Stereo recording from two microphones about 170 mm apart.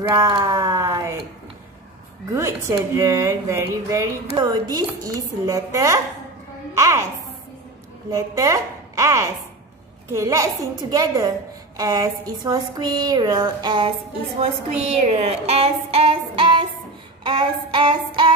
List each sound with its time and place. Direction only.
0.1 s speech: 20° right (ahead or behind)
2.3 s a woman's voice: 15° right (ahead or behind)
8.1 s a woman's voice: 20° right (ahead or behind)